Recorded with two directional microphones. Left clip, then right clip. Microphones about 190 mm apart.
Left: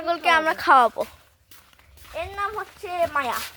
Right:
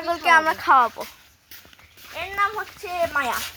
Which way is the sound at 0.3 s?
45° left (ahead or behind).